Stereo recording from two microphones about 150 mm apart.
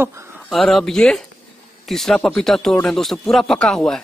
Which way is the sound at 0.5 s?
Centre (ahead or behind).